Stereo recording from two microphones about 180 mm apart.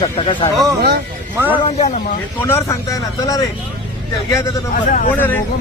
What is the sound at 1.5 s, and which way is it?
Speech, 30° left (ahead or behind).